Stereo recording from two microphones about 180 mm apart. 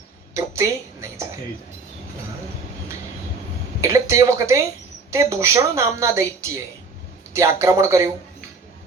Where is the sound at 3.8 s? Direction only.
15° right (ahead or behind).